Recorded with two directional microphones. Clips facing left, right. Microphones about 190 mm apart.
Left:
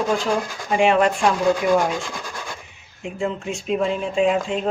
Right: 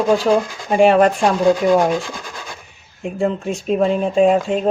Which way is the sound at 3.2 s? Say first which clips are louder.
Right 5 dB; 40° right (ahead or behind).